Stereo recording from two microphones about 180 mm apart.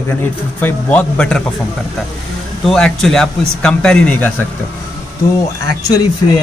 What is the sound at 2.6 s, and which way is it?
A man's voice, centre (ahead or behind).